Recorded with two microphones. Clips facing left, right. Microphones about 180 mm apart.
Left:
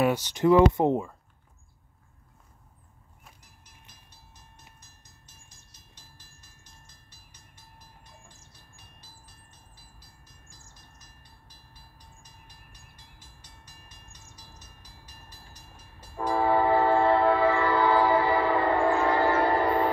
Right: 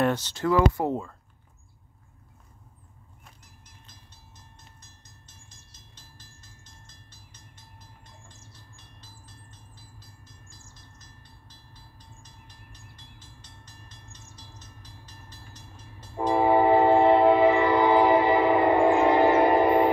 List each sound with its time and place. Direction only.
0.0 s speech: 15° left (ahead or behind)
3.8 s train: 10° left (ahead or behind)
16.2 s train: 20° right (ahead or behind)